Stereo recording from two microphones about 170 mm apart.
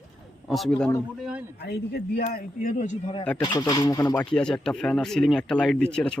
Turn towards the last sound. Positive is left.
turn(degrees=5)  # may be behind; listen again after turning